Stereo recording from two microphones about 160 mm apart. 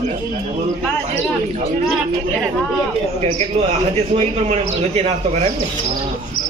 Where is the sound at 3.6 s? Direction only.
40° right (ahead or behind).